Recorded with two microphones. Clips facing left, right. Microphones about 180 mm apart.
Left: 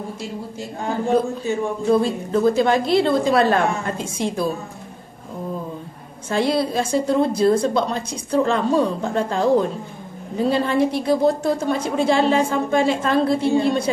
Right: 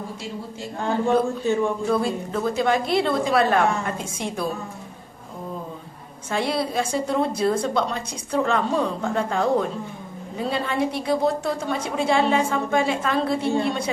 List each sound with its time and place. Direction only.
1.9 s a woman's voice: 30° left (ahead or behind)
6.3 s a woman's voice: 35° left (ahead or behind)